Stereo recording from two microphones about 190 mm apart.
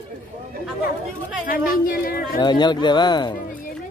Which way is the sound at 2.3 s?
25° left (ahead or behind).